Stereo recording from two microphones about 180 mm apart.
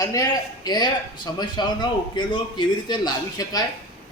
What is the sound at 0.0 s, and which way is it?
A man's voice, 20° left (ahead or behind).